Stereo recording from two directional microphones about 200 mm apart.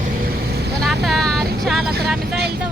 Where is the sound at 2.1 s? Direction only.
55° right (ahead or behind).